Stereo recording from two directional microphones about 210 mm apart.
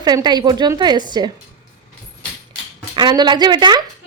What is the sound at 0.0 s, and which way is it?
Speech, 20° right (ahead or behind).